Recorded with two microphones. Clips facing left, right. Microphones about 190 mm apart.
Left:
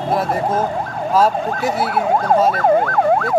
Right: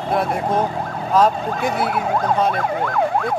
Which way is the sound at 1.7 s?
55° right (ahead or behind).